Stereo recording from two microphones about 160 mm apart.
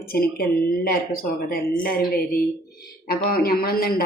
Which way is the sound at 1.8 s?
65° left (ahead or behind).